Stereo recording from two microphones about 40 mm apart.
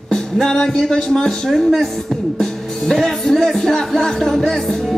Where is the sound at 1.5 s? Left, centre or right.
Centre.